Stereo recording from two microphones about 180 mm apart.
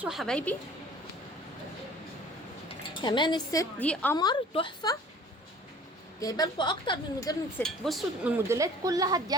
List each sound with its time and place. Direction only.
0.0 s a woman's voice: centre (ahead or behind)
2.6 s speech: 25° left (ahead or behind)
3.8 s a woman's voice: 10° left (ahead or behind)
4.2 s a woman's voice: 25° left (ahead or behind)
6.1 s a woman's voice: 20° left (ahead or behind)
7.6 s speech: centre (ahead or behind); by 9.3 s 20° right (ahead or behind)